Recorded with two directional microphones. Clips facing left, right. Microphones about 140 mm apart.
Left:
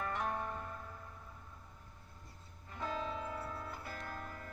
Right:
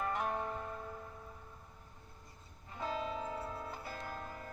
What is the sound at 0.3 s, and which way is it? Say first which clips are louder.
Zither: right 2 dB; 25° right (ahead or behind).